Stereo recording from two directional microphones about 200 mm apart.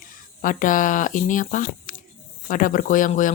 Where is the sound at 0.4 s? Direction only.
40° left (ahead or behind).